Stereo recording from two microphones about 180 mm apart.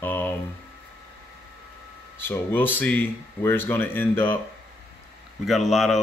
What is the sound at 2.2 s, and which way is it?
Speech, 10° left (ahead or behind).